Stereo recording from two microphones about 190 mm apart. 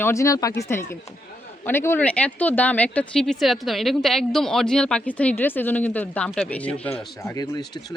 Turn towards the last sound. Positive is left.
turn(degrees=20)  # may be behind; listen again after turning